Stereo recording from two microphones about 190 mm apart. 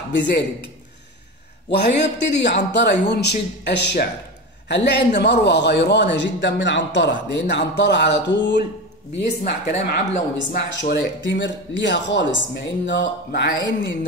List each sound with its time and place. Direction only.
1.8 s a man's voice: 65° left (ahead or behind)
9.2 s speech: 40° left (ahead or behind)
9.8 s a man's voice: 55° left (ahead or behind)